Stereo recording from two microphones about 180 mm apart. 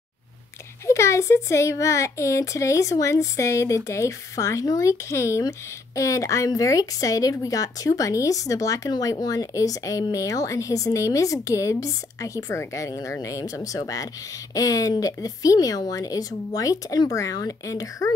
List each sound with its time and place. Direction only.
0.8 s speech: 15° left (ahead or behind)